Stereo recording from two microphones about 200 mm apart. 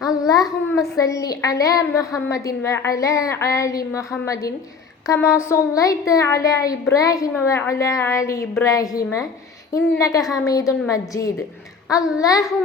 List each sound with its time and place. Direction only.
0.0 s a child's voice: 20° left (ahead or behind)